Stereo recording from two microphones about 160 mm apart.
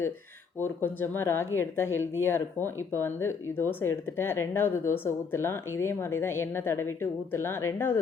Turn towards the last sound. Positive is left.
turn(degrees=15)  # may be behind; listen again after turning